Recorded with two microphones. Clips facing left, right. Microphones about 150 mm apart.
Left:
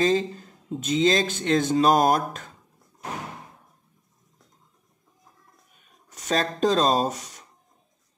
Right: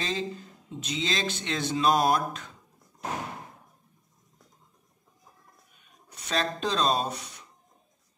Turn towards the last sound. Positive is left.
turn(degrees=45)  # may be behind; listen again after turning